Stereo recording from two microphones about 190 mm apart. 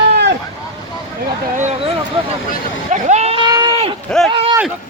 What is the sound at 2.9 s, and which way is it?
Vehicle, 35° right (ahead or behind).